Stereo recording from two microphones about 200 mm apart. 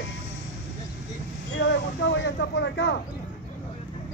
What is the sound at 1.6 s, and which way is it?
Vehicle, 65° left (ahead or behind).